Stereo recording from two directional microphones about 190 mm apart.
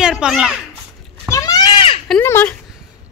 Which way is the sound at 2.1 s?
10° left (ahead or behind).